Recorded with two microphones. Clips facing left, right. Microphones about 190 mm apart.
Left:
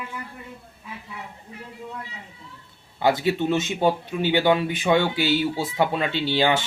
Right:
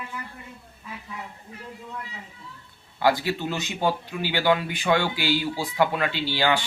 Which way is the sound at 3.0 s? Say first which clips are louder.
Left 3 dB; 20° left (ahead or behind).